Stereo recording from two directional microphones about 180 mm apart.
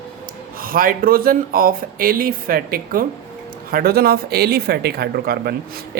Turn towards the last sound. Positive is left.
turn(degrees=-60)  # may be behind; listen again after turning